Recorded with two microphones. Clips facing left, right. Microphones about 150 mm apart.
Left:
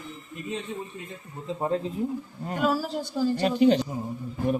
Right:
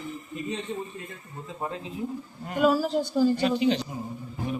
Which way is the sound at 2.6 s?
5° left (ahead or behind).